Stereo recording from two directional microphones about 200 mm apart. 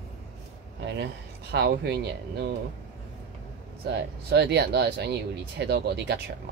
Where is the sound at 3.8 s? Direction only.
55° right (ahead or behind).